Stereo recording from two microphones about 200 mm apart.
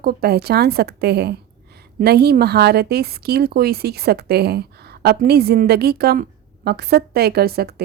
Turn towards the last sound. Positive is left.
turn(degrees=-50)  # may be behind; listen again after turning